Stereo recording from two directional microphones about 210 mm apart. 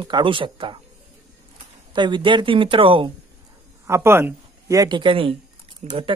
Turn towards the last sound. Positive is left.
turn(degrees=-25)  # may be behind; listen again after turning